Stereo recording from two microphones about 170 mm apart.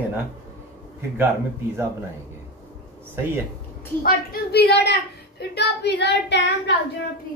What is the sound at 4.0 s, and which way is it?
A woman's voice, 65° left (ahead or behind).